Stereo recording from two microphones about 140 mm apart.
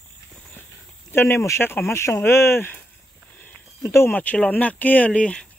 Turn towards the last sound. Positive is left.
turn(degrees=10)  # may be behind; listen again after turning